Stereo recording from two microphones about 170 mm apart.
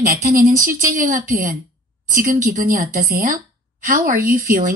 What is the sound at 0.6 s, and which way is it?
A woman's voice, 55° right (ahead or behind).